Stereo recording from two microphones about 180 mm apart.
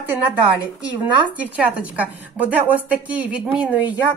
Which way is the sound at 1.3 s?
10° right (ahead or behind).